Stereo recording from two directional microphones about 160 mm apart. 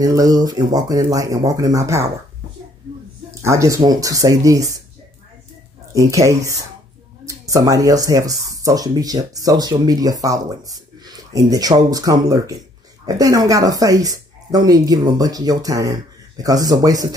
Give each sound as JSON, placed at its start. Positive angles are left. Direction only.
{"t": 0.0, "sound": "speech", "side_deg": -20}
{"t": 3.4, "sound": "speech", "side_deg": -20}
{"t": 5.9, "sound": "speech", "side_deg": -20}